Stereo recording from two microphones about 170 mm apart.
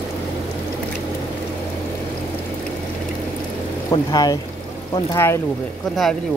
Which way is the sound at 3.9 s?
20° left (ahead or behind).